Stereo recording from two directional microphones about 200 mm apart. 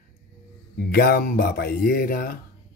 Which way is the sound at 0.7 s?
50° left (ahead or behind).